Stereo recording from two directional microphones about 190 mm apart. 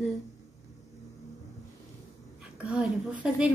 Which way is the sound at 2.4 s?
5° right (ahead or behind).